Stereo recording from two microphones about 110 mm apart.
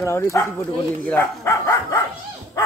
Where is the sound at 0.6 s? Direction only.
15° left (ahead or behind).